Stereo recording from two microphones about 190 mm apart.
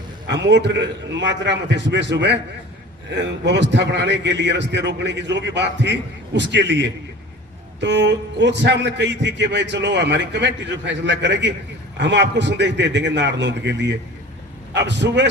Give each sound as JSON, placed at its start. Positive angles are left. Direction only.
{"t": 0.3, "sound": "a man's voice", "side_deg": -65}